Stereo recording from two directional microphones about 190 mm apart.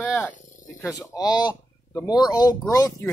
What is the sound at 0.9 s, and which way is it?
Speech, 20° left (ahead or behind).